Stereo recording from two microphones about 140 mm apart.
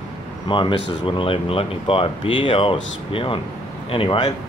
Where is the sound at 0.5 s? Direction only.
35° left (ahead or behind).